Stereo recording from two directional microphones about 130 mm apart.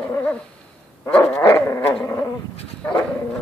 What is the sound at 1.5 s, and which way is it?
Dog, 20° left (ahead or behind).